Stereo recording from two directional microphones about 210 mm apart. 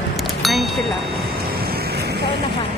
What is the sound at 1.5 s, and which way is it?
Vehicle, 45° right (ahead or behind).